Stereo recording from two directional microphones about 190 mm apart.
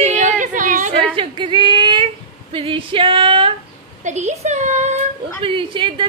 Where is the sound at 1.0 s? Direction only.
25° right (ahead or behind).